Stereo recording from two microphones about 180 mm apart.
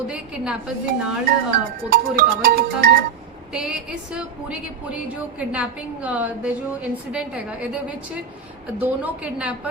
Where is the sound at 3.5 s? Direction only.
5° right (ahead or behind).